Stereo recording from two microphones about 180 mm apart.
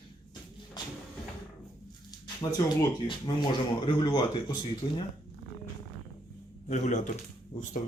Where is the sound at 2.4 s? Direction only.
20° left (ahead or behind).